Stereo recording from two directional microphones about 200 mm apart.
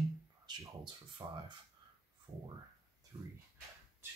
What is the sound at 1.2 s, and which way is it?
Speech, 25° right (ahead or behind).